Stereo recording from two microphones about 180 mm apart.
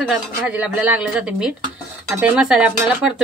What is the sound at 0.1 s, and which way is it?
Speech, 5° right (ahead or behind).